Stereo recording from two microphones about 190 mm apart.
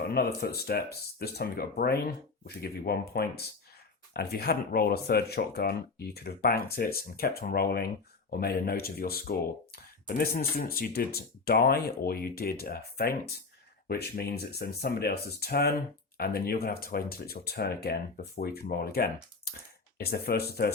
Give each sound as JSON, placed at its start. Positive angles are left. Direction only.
{"t": 0.1, "sound": "speech", "side_deg": 55}